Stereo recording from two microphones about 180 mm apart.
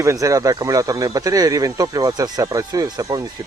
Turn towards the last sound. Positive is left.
turn(degrees=-20)  # may be behind; listen again after turning